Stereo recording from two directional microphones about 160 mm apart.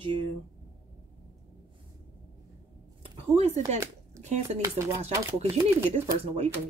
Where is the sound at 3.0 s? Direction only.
40° right (ahead or behind).